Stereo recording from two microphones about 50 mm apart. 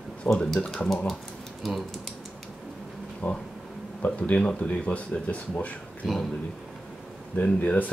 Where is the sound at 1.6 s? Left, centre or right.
Centre.